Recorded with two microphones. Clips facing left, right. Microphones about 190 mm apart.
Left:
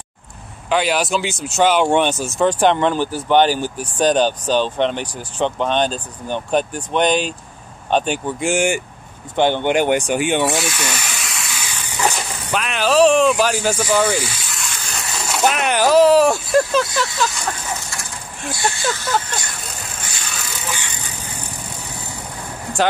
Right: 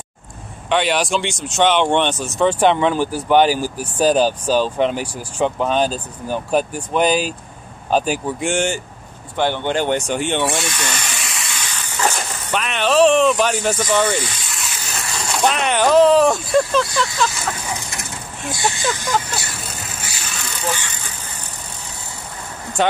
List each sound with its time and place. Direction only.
0.7 s speech: centre (ahead or behind)
11.7 s a sound: 15° left (ahead or behind)
15.2 s speech: 5° left (ahead or behind)
17.6 s a sound: 20° right (ahead or behind)
18.5 s speech: 15° right (ahead or behind)
19.3 s speech: 5° right (ahead or behind)
20.7 s vehicle: 15° left (ahead or behind)